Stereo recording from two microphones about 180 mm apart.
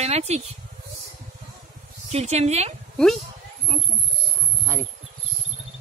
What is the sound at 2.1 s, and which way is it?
Speech, 40° right (ahead or behind).